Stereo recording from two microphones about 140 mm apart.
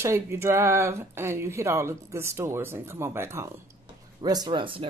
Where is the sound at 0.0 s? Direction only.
20° right (ahead or behind).